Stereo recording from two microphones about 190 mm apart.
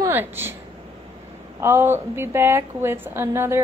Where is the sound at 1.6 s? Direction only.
10° right (ahead or behind).